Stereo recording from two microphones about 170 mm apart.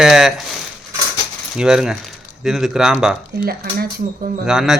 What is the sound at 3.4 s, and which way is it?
Speech, 60° right (ahead or behind).